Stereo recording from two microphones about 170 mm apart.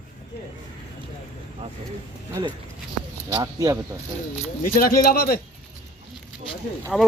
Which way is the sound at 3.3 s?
25° right (ahead or behind).